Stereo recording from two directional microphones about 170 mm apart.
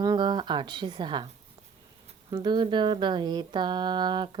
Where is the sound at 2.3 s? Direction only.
25° right (ahead or behind).